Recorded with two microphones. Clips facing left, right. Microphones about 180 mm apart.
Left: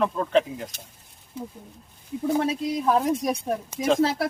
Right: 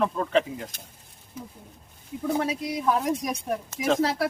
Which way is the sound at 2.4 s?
30° left (ahead or behind).